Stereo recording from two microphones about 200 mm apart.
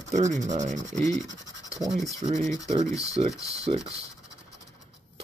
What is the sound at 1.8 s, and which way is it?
Speech, centre (ahead or behind).